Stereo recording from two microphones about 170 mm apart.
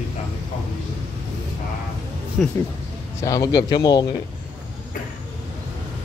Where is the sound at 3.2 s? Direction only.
20° left (ahead or behind).